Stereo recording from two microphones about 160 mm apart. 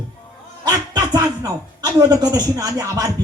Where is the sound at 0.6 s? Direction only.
25° right (ahead or behind).